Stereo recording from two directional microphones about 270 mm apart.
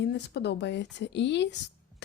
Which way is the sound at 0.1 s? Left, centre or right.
Left.